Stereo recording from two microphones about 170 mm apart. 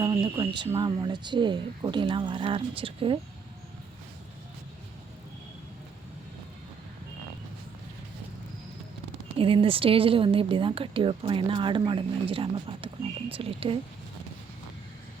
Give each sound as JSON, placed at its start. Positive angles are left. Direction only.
{"t": 0.0, "sound": "speech", "side_deg": -25}
{"t": 9.4, "sound": "speech", "side_deg": -30}